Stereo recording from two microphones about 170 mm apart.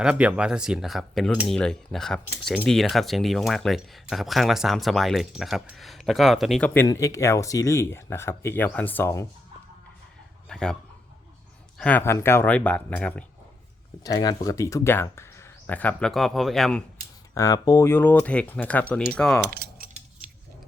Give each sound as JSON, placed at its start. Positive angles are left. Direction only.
{"t": 0.0, "sound": "speech", "side_deg": -5}
{"t": 6.7, "sound": "speech", "side_deg": 15}
{"t": 10.5, "sound": "speech", "side_deg": 5}
{"t": 11.8, "sound": "speech", "side_deg": 10}
{"t": 14.0, "sound": "speech", "side_deg": 25}
{"t": 17.3, "sound": "speech", "side_deg": 20}
{"t": 19.5, "sound": "mechanisms", "side_deg": -65}